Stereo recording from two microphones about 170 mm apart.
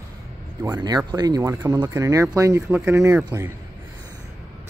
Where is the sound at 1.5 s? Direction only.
10° right (ahead or behind).